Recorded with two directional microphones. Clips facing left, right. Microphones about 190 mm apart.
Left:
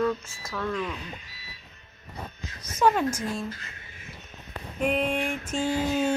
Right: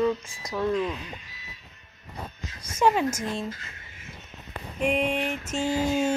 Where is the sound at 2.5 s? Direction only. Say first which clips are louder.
Even; 10° right (ahead or behind).